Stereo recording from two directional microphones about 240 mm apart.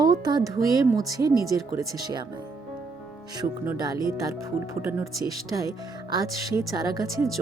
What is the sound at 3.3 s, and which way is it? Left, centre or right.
Speech, centre.